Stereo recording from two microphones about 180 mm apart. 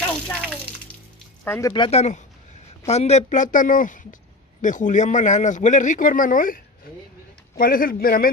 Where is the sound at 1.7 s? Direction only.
25° left (ahead or behind).